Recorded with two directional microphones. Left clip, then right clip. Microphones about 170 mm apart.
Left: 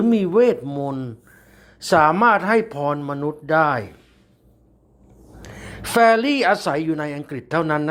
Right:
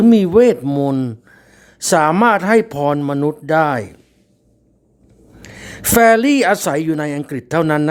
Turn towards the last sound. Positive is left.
turn(degrees=-40)  # may be behind; listen again after turning